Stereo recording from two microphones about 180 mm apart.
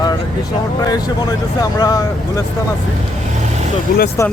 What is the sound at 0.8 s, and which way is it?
Speech, 20° left (ahead or behind).